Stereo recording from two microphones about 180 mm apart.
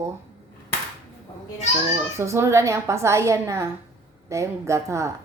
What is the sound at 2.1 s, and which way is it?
Speech, 15° right (ahead or behind).